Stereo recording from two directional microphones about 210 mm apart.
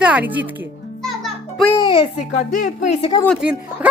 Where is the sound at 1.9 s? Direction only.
30° left (ahead or behind).